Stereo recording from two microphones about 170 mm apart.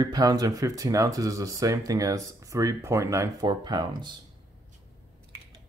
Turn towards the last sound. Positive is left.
turn(degrees=-25)  # may be behind; listen again after turning